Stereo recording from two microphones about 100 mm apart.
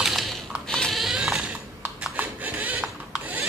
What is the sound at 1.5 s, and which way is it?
Typing, 20° right (ahead or behind).